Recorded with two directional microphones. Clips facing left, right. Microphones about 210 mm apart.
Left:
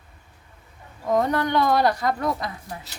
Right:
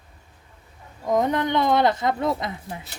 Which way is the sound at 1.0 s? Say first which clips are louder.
Even; 20° right (ahead or behind).